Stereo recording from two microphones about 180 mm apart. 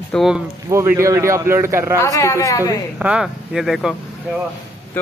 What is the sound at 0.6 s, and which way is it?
Speech, 15° right (ahead or behind).